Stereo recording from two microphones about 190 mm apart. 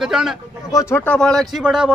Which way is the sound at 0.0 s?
Centre (ahead or behind).